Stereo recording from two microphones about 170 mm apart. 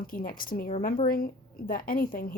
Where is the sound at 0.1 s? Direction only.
55° left (ahead or behind).